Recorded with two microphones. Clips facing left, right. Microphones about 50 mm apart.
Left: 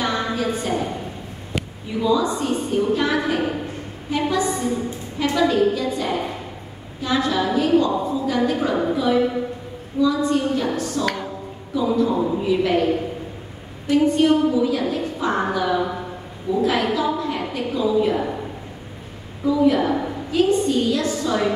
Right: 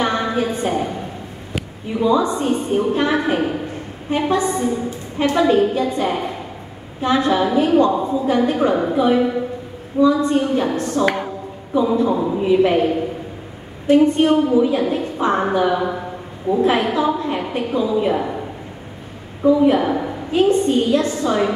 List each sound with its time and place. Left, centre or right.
0.0 s a sound: right
2.0 s a woman's voice: right
13.8 s a woman's voice: right
19.4 s a woman's voice: right